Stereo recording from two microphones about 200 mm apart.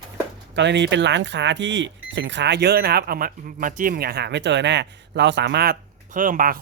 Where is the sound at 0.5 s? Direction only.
60° right (ahead or behind).